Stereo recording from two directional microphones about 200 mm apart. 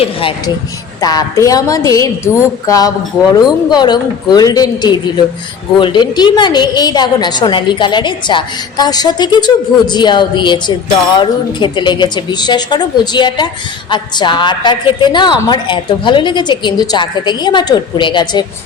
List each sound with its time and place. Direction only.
0.0 s a woman's voice: 25° left (ahead or behind)